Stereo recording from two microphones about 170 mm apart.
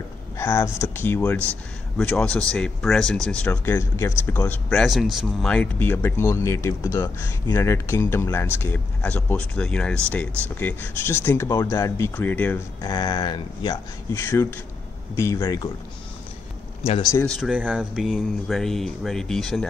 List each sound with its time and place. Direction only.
0.4 s speech: 15° left (ahead or behind)
14.1 s speech: 15° left (ahead or behind)
17.0 s speech: 20° left (ahead or behind)
17.3 s speech: 5° right (ahead or behind)